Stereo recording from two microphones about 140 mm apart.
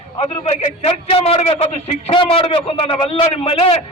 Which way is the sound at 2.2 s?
40° left (ahead or behind).